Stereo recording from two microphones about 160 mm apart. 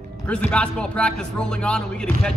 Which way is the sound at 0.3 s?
5° left (ahead or behind).